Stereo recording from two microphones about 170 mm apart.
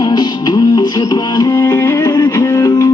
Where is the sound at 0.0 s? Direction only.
25° left (ahead or behind).